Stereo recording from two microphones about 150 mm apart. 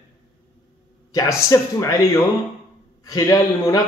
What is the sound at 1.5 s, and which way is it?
Speech, 20° left (ahead or behind).